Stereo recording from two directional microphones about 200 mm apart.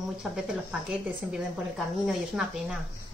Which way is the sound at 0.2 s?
5° right (ahead or behind).